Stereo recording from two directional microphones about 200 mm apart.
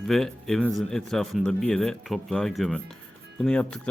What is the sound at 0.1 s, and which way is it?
Speech, centre (ahead or behind).